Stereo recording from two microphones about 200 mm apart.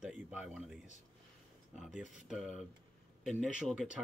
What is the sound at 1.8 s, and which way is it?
Speech, centre (ahead or behind).